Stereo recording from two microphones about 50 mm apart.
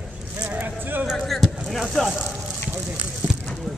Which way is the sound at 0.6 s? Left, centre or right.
Right.